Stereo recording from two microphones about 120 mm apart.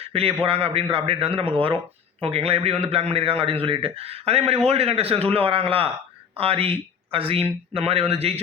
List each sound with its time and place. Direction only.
0.1 s a man's voice: 50° right (ahead or behind)